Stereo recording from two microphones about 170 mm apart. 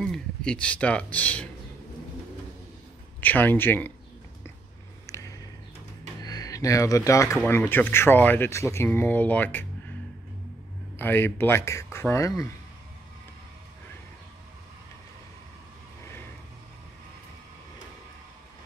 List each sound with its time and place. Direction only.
0.0 s speech: 5° left (ahead or behind)
3.2 s speech: 10° left (ahead or behind)
5.0 s a sound: 15° left (ahead or behind)
6.2 s speech: 20° left (ahead or behind)
11.0 s speech: 10° left (ahead or behind)